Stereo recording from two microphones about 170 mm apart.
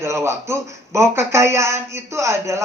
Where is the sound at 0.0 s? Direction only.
15° right (ahead or behind).